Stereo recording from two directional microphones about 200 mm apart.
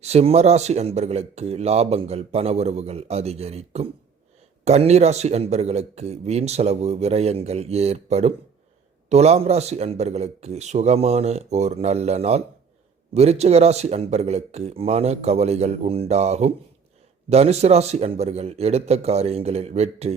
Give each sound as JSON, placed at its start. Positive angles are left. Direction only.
{"t": 0.0, "sound": "speech", "side_deg": -30}